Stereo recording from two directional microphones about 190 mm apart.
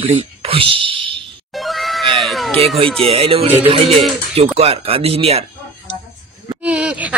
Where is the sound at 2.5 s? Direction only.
30° right (ahead or behind).